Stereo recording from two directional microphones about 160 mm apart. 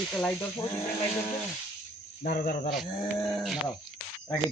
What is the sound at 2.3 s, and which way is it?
Cricket, 60° left (ahead or behind).